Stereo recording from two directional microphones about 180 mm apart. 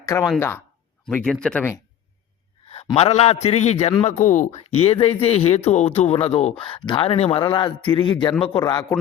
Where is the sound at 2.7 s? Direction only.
35° left (ahead or behind).